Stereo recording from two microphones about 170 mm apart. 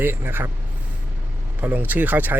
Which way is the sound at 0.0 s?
10° right (ahead or behind).